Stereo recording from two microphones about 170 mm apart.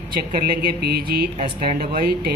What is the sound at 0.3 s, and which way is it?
Speech, 60° right (ahead or behind).